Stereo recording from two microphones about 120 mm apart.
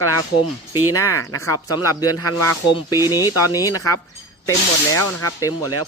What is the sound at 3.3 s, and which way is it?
Speech, 30° left (ahead or behind).